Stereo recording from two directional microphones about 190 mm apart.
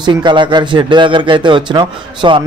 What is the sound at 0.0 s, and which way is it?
A man's voice, 25° right (ahead or behind).